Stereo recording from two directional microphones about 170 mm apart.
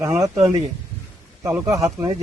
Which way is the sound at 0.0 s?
15° right (ahead or behind).